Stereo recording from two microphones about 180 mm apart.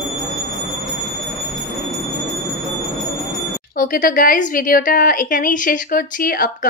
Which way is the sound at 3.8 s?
50° left (ahead or behind).